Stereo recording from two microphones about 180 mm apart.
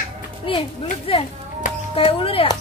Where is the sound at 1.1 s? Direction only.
30° left (ahead or behind).